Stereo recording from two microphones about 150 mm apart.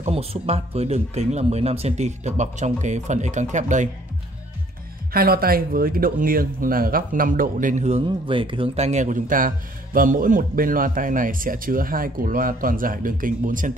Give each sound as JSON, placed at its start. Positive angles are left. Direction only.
{"t": 0.0, "sound": "speech", "side_deg": -40}
{"t": 5.1, "sound": "speech", "side_deg": -85}